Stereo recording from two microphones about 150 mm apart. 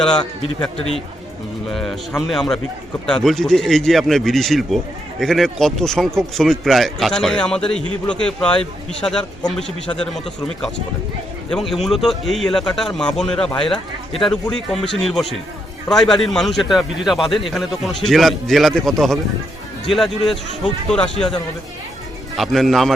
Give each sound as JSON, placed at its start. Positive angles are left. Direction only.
{"t": 0.0, "sound": "a man's voice", "side_deg": 5}
{"t": 11.5, "sound": "a man's voice", "side_deg": 0}
{"t": 22.4, "sound": "a man's voice", "side_deg": 0}